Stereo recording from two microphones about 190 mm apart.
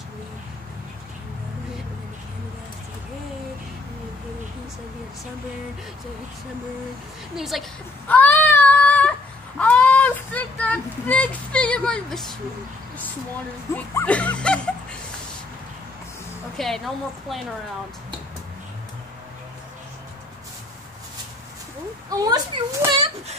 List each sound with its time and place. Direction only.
7.3 s a woman's voice: centre (ahead or behind)
8.1 s child singing: 10° left (ahead or behind)
9.6 s speech: 10° left (ahead or behind)
13.9 s music: 5° left (ahead or behind)
16.5 s a woman's voice: centre (ahead or behind)
22.2 s speech: 20° right (ahead or behind)